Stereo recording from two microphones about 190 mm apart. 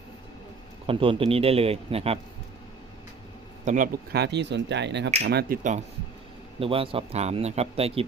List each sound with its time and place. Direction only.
0.9 s speech: 30° right (ahead or behind)
3.7 s speech: 45° right (ahead or behind)
4.1 s speech: 60° right (ahead or behind)
6.6 s speech: 30° right (ahead or behind)